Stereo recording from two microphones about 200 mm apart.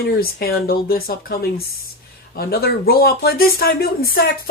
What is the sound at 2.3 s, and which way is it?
Speech, 50° left (ahead or behind).